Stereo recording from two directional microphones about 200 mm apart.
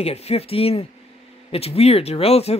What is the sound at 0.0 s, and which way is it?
Speech, 30° left (ahead or behind).